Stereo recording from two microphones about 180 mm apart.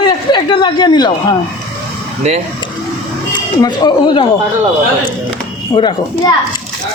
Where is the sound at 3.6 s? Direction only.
25° left (ahead or behind).